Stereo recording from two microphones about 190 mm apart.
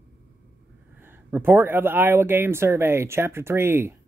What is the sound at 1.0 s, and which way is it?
Speech, 10° right (ahead or behind).